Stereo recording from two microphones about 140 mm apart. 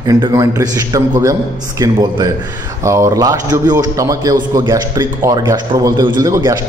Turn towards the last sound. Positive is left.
turn(degrees=-25)  # may be behind; listen again after turning